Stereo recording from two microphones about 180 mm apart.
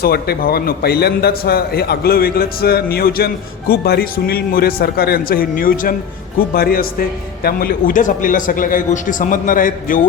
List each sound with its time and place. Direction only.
0.0 s a man's voice: 55° left (ahead or behind)